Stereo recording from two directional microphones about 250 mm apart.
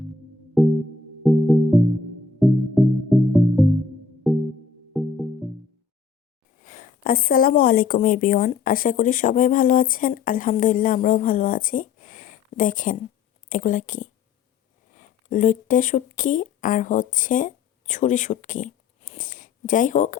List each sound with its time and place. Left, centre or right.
0.6 s music: centre
6.7 s speech: left